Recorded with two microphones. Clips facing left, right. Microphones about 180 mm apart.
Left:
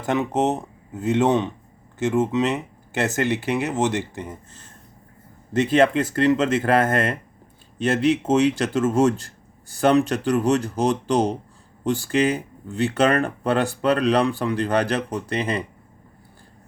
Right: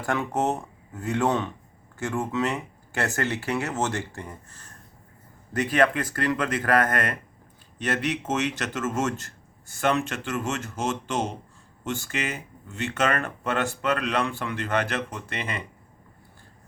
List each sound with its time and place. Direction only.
0.0 s speech: 20° left (ahead or behind); by 15.6 s 35° left (ahead or behind)